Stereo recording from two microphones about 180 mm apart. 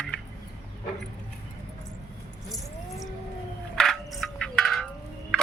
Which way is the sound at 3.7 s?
Centre (ahead or behind).